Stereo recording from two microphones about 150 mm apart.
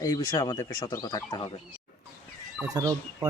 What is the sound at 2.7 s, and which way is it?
Speech, 25° right (ahead or behind).